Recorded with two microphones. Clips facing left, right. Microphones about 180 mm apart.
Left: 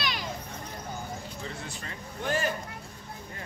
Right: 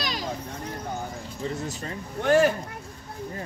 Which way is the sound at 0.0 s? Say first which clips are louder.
Right 3 dB; 40° right (ahead or behind).